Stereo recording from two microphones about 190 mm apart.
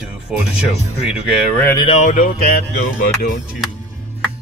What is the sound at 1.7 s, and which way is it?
Speech, 30° left (ahead or behind).